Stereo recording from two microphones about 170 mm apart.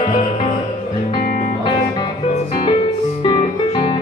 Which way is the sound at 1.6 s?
25° left (ahead or behind).